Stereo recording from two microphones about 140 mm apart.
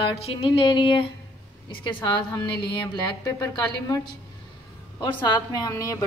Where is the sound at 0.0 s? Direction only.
40° left (ahead or behind).